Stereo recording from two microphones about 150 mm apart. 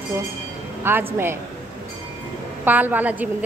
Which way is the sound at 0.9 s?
15° right (ahead or behind).